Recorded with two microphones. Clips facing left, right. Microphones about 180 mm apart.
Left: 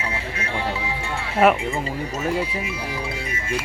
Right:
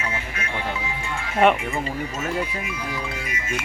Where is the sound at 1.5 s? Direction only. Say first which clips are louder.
Left 1 dB; 25° left (ahead or behind).